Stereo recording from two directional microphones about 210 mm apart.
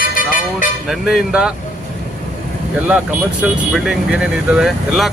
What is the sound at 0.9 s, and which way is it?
Speech, centre (ahead or behind).